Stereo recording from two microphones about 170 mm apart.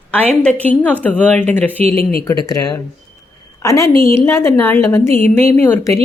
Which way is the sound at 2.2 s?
20° left (ahead or behind).